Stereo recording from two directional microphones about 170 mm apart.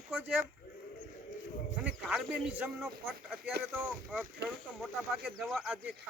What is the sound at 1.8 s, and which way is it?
Speech, 5° right (ahead or behind).